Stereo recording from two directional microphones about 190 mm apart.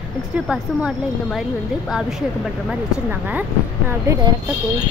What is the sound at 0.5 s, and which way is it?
Speech, 5° right (ahead or behind).